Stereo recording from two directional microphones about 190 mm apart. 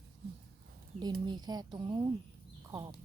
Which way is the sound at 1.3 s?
20° right (ahead or behind).